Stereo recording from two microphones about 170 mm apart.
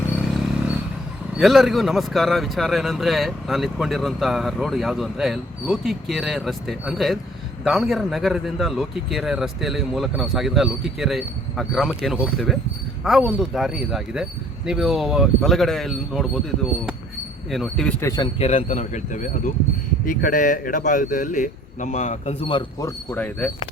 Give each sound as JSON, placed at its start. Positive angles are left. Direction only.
{"t": 0.2, "sound": "a sound", "side_deg": 0}
{"t": 1.4, "sound": "speech", "side_deg": 0}
{"t": 17.5, "sound": "speech", "side_deg": 0}
{"t": 18.3, "sound": "speech", "side_deg": 40}